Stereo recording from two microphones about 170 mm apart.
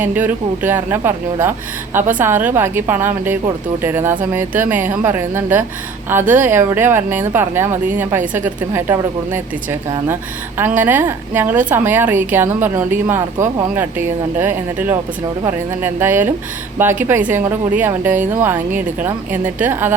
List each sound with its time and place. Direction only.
0.0 s speech: 10° right (ahead or behind)
10.6 s speech: 10° right (ahead or behind)